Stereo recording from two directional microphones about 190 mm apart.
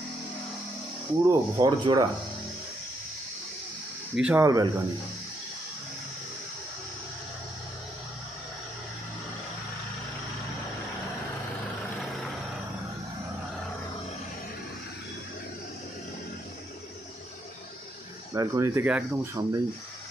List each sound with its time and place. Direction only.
1.2 s speech: 20° right (ahead or behind)
4.1 s speech: 5° right (ahead or behind)
4.5 s speech: 20° right (ahead or behind)
18.3 s speech: 15° right (ahead or behind)
19.4 s speech: 20° right (ahead or behind)